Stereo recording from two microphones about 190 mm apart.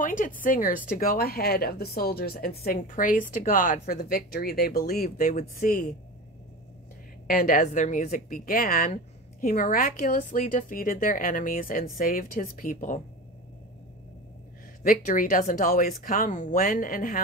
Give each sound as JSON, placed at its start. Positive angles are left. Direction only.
{"t": 0.0, "sound": "speech", "side_deg": 45}
{"t": 7.2, "sound": "speech", "side_deg": 45}
{"t": 14.8, "sound": "speech", "side_deg": 45}